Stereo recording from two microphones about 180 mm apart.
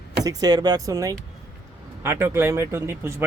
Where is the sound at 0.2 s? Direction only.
20° right (ahead or behind).